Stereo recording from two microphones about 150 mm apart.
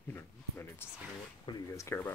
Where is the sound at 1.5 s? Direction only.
35° left (ahead or behind).